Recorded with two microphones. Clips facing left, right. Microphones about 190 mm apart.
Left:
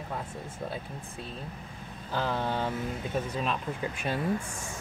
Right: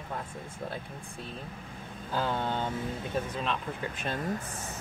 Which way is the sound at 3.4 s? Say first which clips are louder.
Left 2 dB; 10° left (ahead or behind).